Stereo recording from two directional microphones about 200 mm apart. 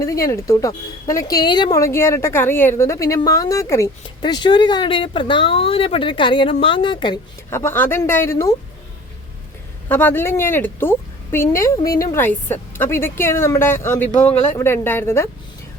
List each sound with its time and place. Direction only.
0.0 s a woman's voice: 15° left (ahead or behind)
7.5 s a woman's voice: 10° left (ahead or behind)
9.9 s a woman's voice: 10° left (ahead or behind)